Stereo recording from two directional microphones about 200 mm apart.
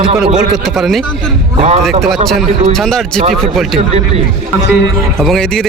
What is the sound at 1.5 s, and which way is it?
Speech, 30° right (ahead or behind).